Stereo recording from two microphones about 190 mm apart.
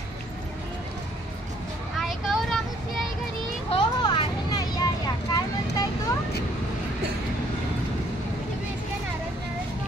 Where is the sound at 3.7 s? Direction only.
25° left (ahead or behind).